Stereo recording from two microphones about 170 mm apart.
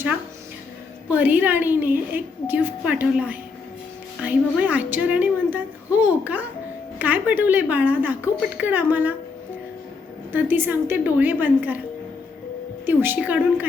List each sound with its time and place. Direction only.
1.1 s a woman's voice: 10° right (ahead or behind)
10.3 s a woman's voice: 10° right (ahead or behind)
12.8 s a woman's voice: 10° right (ahead or behind)